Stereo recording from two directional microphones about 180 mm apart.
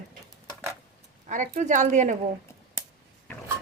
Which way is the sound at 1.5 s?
45° right (ahead or behind).